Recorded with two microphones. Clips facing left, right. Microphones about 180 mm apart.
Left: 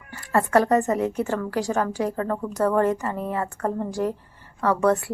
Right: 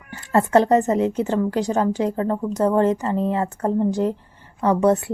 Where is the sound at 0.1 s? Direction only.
25° right (ahead or behind).